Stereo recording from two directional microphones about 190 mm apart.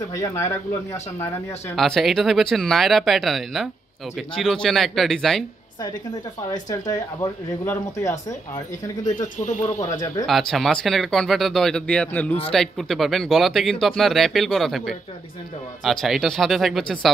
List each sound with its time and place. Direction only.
0.1 s speech: 15° left (ahead or behind)
1.8 s speech: centre (ahead or behind)
6.5 s speech: 20° left (ahead or behind)
9.6 s speech: 15° left (ahead or behind)
10.2 s speech: centre (ahead or behind)